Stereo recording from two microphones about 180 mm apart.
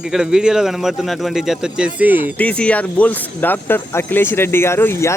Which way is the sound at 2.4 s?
5° left (ahead or behind).